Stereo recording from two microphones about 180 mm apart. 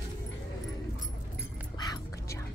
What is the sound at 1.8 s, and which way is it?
Music, 20° left (ahead or behind).